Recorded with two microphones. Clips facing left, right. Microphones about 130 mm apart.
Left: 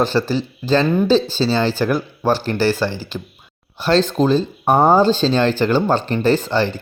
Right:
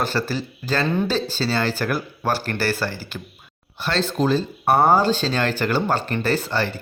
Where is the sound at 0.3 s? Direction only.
25° left (ahead or behind).